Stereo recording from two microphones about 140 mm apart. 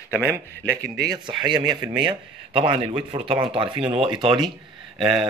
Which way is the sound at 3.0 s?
35° right (ahead or behind).